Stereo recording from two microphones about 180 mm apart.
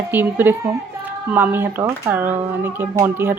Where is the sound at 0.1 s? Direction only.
10° right (ahead or behind).